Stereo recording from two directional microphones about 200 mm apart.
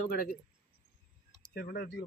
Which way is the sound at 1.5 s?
50° left (ahead or behind).